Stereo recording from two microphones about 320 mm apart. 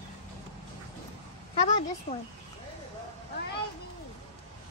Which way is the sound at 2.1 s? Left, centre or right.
Centre.